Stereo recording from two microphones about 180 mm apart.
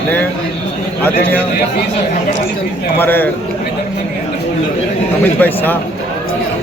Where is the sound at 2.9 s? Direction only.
10° left (ahead or behind).